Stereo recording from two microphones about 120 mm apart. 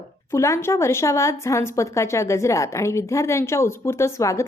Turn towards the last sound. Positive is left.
turn(degrees=25)  # may be behind; listen again after turning